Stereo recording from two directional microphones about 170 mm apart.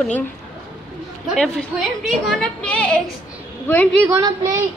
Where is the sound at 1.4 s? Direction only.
Centre (ahead or behind).